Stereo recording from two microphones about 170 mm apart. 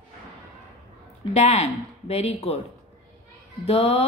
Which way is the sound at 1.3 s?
40° left (ahead or behind).